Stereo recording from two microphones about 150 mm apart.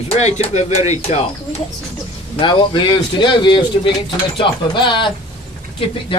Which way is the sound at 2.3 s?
35° left (ahead or behind).